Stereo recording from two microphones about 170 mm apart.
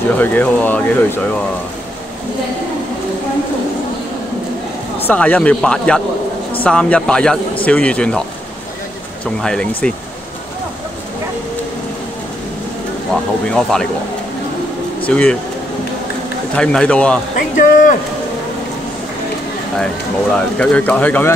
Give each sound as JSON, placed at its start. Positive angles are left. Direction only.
{"t": 0.2, "sound": "speech", "side_deg": 10}
{"t": 5.0, "sound": "speech", "side_deg": 10}
{"t": 9.2, "sound": "speech", "side_deg": 5}
{"t": 13.1, "sound": "speech", "side_deg": 5}
{"t": 15.0, "sound": "speech", "side_deg": 5}
{"t": 16.5, "sound": "speech", "side_deg": 5}
{"t": 17.4, "sound": "speech", "side_deg": 50}
{"t": 20.3, "sound": "speech", "side_deg": 5}